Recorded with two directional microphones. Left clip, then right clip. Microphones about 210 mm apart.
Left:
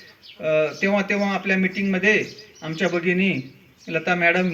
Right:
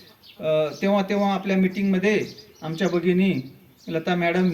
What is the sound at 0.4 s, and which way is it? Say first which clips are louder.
Speech: left 2 dB; 55° right (ahead or behind).